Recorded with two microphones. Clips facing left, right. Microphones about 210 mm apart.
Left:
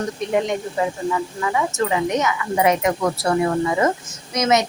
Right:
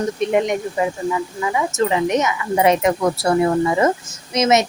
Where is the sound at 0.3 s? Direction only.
15° right (ahead or behind).